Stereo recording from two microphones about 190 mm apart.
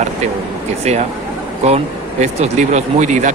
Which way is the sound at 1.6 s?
35° right (ahead or behind).